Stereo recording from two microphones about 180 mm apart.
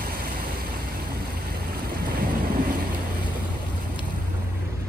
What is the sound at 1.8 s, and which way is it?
Boat, 55° right (ahead or behind).